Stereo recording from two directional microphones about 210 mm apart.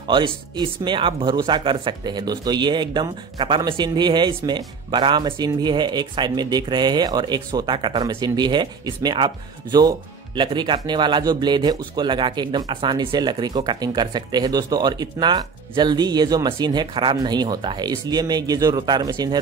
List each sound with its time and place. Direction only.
0.0 s speech: 20° right (ahead or behind)